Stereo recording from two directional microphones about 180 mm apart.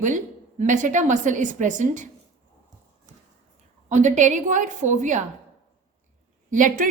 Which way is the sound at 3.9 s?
45° right (ahead or behind).